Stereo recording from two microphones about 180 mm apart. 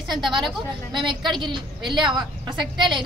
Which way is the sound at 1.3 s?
25° right (ahead or behind).